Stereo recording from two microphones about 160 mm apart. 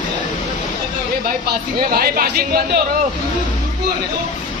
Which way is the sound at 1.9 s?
70° right (ahead or behind).